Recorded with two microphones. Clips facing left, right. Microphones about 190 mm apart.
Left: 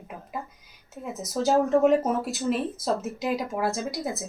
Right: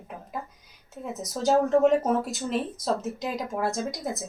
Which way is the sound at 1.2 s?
5° left (ahead or behind).